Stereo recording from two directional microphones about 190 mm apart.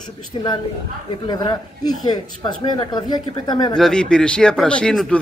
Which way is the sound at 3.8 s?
5° left (ahead or behind).